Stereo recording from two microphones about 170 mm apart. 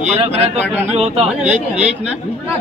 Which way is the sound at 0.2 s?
35° right (ahead or behind).